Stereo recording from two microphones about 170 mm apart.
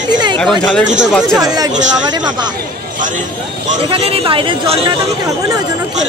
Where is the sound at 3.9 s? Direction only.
35° right (ahead or behind).